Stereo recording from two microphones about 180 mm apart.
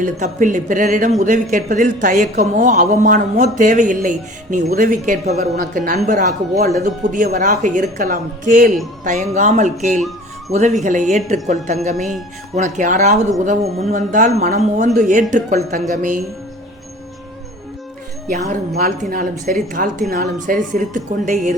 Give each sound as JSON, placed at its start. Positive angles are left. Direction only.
{"t": 0.0, "sound": "a man's voice", "side_deg": -45}
{"t": 18.3, "sound": "speech", "side_deg": -40}
{"t": 18.7, "sound": "a man's voice", "side_deg": -55}